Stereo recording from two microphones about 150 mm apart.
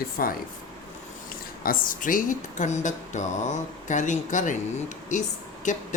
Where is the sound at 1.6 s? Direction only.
70° left (ahead or behind).